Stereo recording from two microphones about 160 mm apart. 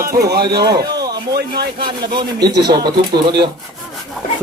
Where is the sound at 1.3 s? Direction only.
80° right.